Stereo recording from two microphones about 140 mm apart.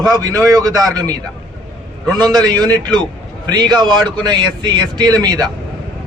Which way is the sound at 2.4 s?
30° right (ahead or behind).